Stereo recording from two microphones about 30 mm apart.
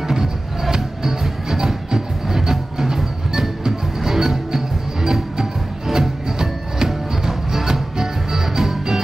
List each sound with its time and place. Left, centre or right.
0.1 s music: centre
5.9 s music: right